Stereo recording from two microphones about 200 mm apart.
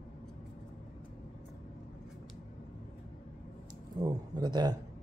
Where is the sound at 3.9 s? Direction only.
20° right (ahead or behind).